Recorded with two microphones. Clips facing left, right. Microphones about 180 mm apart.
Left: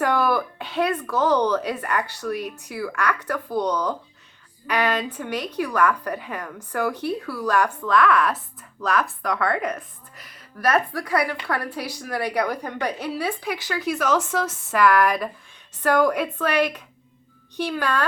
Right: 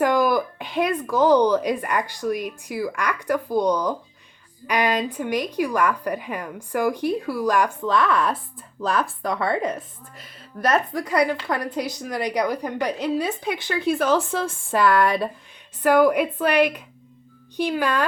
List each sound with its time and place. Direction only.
0.0 s speech: 15° right (ahead or behind)
7.9 s a woman's voice: 25° right (ahead or behind)
15.8 s speech: 10° right (ahead or behind)